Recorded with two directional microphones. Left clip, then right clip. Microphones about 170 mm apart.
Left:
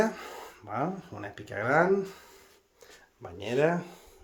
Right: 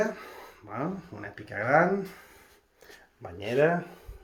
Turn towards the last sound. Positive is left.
turn(degrees=10)  # may be behind; listen again after turning